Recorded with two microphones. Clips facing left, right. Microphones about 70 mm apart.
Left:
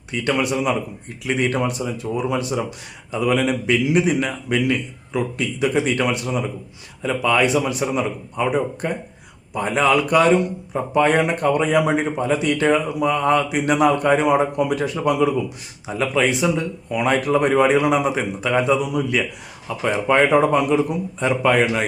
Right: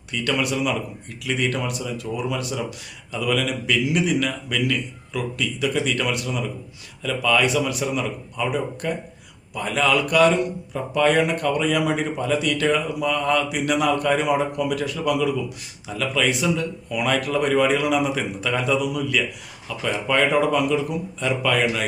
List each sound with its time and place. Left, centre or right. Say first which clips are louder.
0.1 s speech: left 3 dB; left